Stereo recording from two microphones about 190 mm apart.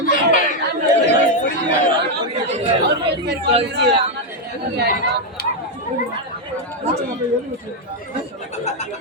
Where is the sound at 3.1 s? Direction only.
65° right (ahead or behind).